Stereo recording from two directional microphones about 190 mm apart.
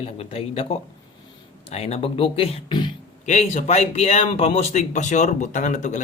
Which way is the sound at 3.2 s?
40° left (ahead or behind).